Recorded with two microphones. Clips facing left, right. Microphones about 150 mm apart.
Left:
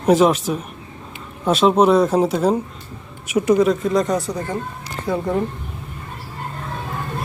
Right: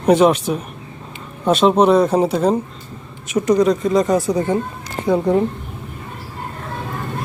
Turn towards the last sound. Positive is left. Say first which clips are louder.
# right 5 dB
turn(degrees=-15)  # may be behind; listen again after turning